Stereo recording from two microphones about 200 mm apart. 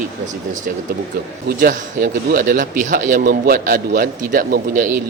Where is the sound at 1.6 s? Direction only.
45° right (ahead or behind).